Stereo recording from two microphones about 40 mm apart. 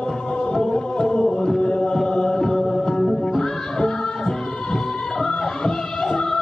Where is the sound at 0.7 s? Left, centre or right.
Centre.